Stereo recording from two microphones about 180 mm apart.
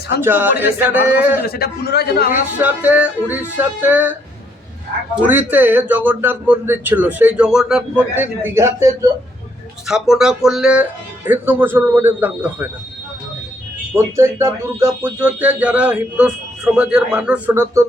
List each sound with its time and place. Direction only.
0.2 s speech: 10° right (ahead or behind)
1.4 s a man's voice: 60° left (ahead or behind)
2.3 s speech: 10° right (ahead or behind)
5.2 s speech: 10° right (ahead or behind)
9.8 s speech: 5° right (ahead or behind)
13.9 s speech: 15° right (ahead or behind)